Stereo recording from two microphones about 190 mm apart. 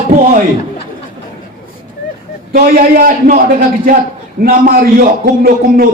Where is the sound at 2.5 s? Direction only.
50° right (ahead or behind).